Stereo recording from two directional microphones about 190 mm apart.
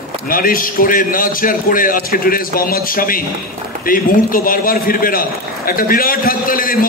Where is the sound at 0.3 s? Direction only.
50° left (ahead or behind).